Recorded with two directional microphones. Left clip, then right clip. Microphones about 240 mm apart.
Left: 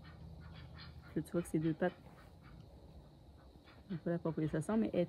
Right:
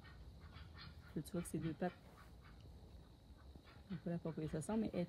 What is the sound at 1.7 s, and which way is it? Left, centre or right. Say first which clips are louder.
Speech: left 7 dB; centre.